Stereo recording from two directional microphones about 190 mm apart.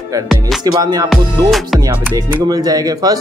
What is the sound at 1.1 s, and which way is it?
Music, centre (ahead or behind).